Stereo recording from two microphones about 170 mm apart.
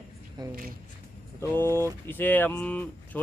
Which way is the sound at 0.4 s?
25° right (ahead or behind).